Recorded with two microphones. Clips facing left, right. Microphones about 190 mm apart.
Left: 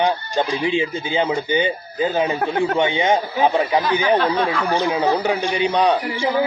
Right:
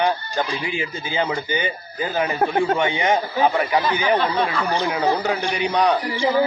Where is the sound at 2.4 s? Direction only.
20° right (ahead or behind).